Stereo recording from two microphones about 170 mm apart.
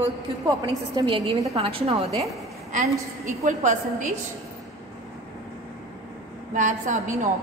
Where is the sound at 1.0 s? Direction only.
25° right (ahead or behind).